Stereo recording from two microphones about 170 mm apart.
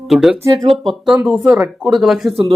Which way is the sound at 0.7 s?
Centre (ahead or behind).